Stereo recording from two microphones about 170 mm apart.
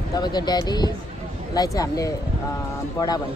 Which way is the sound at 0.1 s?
25° left (ahead or behind).